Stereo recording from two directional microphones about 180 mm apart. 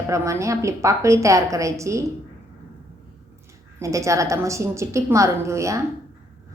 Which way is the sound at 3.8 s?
15° right (ahead or behind).